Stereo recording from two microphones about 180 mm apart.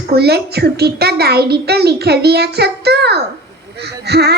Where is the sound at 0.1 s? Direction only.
65° right (ahead or behind).